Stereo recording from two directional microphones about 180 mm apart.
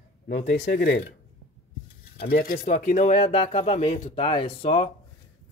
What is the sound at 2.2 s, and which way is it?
Speech, 60° left (ahead or behind).